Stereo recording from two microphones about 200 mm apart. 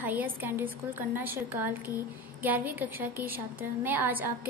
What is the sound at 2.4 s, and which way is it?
A woman's voice, 10° right (ahead or behind).